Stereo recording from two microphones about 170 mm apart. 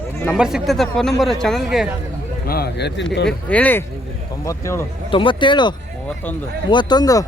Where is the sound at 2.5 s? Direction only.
75° left (ahead or behind); by 3.3 s 90° left.